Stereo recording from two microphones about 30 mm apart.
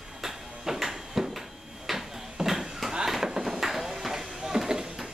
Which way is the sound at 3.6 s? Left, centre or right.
Centre.